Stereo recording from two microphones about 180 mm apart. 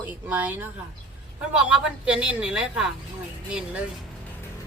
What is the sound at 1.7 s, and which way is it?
A woman's voice, 5° right (ahead or behind).